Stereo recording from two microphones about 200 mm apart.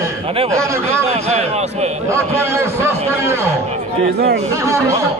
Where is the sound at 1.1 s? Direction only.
35° right (ahead or behind).